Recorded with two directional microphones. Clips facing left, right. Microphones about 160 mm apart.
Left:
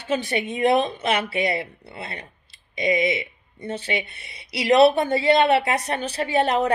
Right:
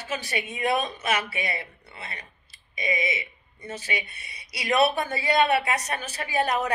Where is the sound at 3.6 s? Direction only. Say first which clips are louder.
Left 6 dB; 30° left (ahead or behind).